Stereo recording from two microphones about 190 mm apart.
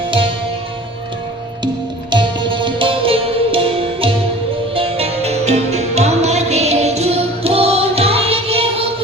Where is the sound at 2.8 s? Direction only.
30° right (ahead or behind).